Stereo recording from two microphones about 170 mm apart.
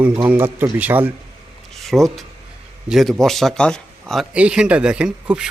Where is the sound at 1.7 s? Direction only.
Centre (ahead or behind).